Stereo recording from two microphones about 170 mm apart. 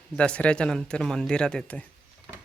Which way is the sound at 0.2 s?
5° left (ahead or behind).